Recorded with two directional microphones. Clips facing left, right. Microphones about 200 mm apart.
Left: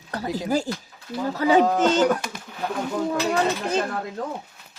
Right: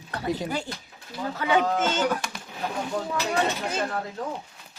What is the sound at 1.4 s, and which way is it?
Speech, 35° left (ahead or behind).